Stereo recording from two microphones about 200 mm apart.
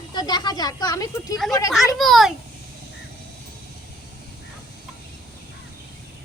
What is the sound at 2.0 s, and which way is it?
Speech, centre (ahead or behind).